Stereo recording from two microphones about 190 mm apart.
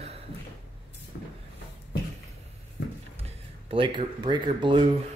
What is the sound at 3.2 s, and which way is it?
Speech, 30° right (ahead or behind).